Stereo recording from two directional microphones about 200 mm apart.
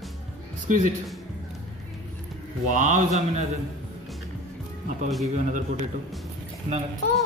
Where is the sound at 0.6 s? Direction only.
40° right (ahead or behind).